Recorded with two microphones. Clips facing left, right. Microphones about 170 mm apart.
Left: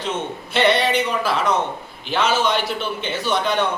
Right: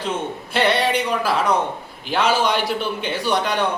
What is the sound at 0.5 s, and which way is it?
Speech, 10° right (ahead or behind).